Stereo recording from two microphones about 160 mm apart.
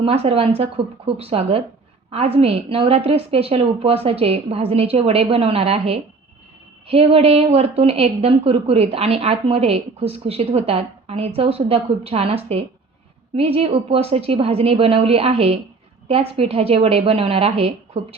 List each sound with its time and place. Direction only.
0.0 s a woman's voice: 40° right (ahead or behind)